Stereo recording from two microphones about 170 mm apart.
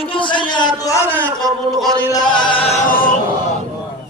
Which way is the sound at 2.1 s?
25° left (ahead or behind).